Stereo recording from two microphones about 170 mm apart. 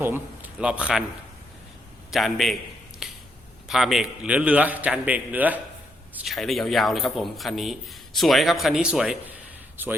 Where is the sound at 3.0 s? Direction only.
5° right (ahead or behind).